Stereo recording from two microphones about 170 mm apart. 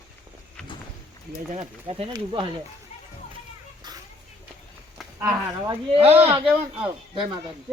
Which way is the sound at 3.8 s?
25° right (ahead or behind).